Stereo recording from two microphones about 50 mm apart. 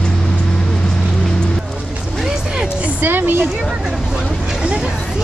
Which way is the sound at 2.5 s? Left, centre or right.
Centre.